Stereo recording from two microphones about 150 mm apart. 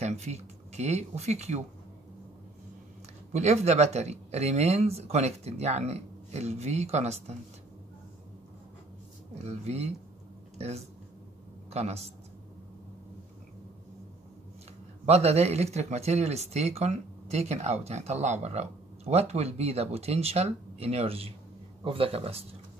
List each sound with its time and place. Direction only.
0.0 s speech: 50° right (ahead or behind)
3.3 s speech: 45° right (ahead or behind)
9.4 s speech: 45° right (ahead or behind)
11.7 s speech: 45° right (ahead or behind)
15.0 s speech: 45° right (ahead or behind)